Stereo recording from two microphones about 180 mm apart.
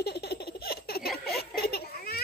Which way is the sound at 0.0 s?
65° left (ahead or behind).